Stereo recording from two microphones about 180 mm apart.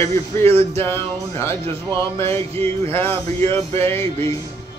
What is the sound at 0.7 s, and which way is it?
Music, 15° left (ahead or behind).